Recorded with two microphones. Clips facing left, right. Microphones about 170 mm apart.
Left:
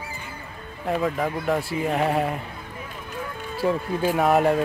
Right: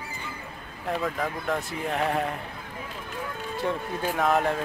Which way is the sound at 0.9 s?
10° left (ahead or behind).